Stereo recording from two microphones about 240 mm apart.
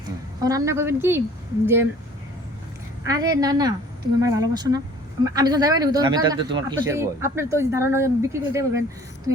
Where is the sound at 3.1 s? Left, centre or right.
Centre.